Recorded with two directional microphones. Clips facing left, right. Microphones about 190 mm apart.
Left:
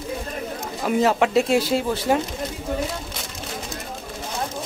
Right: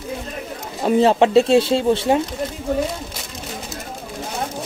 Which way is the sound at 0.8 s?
30° right (ahead or behind).